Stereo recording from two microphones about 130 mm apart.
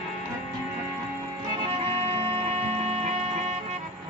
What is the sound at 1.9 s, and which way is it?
Music, 50° right (ahead or behind).